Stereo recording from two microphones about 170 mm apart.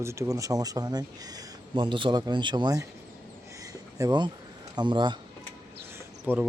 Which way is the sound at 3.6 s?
20° right (ahead or behind).